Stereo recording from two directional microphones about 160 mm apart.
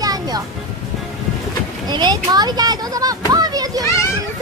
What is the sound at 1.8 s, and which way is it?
Speech, 25° right (ahead or behind).